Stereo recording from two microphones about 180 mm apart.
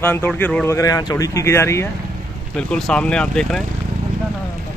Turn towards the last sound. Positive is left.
turn(degrees=5)  # may be behind; listen again after turning